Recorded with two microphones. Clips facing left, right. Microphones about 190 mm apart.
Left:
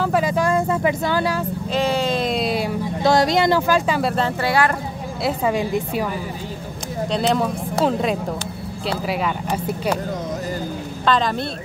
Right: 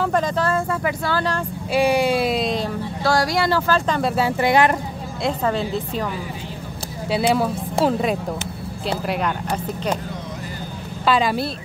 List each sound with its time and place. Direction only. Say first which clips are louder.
0.0 s speech: left 1 dB; 5° left (ahead or behind)
1.7 s speech: right 3 dB; 10° right (ahead or behind); by 4.1 s 5° left (ahead or behind)
4.4 s speech: right 4 dB; 20° right (ahead or behind)
5.2 s speech: left 1 dB; 10° left (ahead or behind)
7.1 s speech: right 1 dB; 5° right (ahead or behind)
11.1 s speech: right 1 dB; 10° right (ahead or behind)